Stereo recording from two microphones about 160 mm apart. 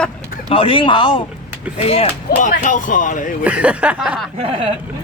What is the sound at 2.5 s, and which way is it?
Speech, 55° left (ahead or behind).